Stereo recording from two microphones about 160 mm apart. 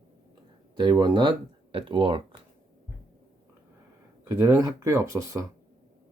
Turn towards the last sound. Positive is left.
turn(degrees=-20)  # may be behind; listen again after turning